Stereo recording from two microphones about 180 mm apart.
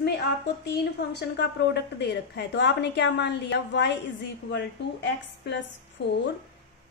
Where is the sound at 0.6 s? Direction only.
70° left (ahead or behind).